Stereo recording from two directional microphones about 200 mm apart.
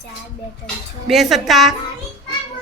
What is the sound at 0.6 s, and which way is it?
Speech, centre (ahead or behind).